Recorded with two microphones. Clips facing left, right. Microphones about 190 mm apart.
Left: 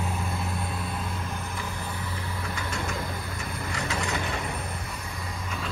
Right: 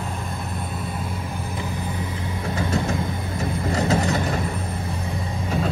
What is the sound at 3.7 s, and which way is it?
Vehicle, 35° right (ahead or behind).